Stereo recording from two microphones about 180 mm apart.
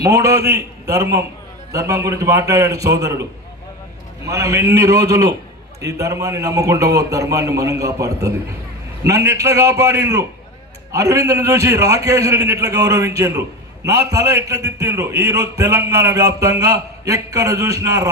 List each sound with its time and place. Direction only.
0.0 s a man's voice: 15° right (ahead or behind)
4.3 s a man's voice: 15° right (ahead or behind)